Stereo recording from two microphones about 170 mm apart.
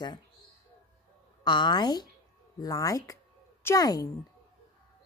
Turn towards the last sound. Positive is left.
turn(degrees=20)  # may be behind; listen again after turning